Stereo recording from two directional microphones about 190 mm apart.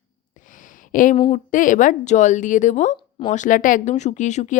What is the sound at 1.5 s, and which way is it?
A woman's voice, 45° left (ahead or behind).